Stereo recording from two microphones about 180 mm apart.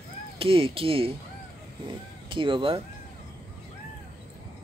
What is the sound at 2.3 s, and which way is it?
Speech, 30° right (ahead or behind).